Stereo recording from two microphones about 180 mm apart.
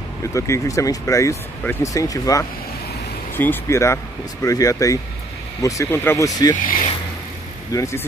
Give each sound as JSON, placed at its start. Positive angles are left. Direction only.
{"t": 0.3, "sound": "speech", "side_deg": 15}
{"t": 6.5, "sound": "speech", "side_deg": 45}
{"t": 7.7, "sound": "speech", "side_deg": 15}